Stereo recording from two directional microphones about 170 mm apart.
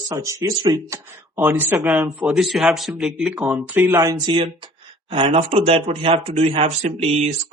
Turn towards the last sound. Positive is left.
turn(degrees=-35)  # may be behind; listen again after turning